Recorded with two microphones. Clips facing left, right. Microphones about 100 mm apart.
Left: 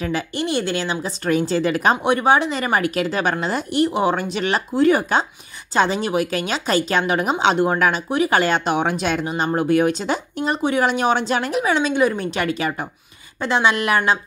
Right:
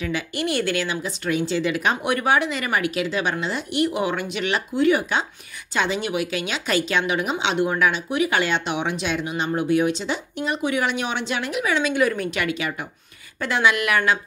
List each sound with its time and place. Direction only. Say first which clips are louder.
0.4 s a woman's voice: even; 25° left (ahead or behind); by 2.0 s 40° left (ahead or behind)
2.0 s a woman's voice: left 2 dB; 25° left (ahead or behind)